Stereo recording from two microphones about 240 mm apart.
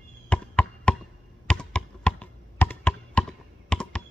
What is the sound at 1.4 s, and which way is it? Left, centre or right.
Computer keyboard, centre.